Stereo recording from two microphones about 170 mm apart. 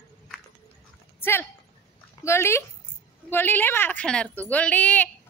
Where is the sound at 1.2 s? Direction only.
15° left (ahead or behind).